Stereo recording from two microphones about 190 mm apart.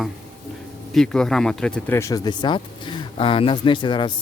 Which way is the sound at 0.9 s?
5° left (ahead or behind).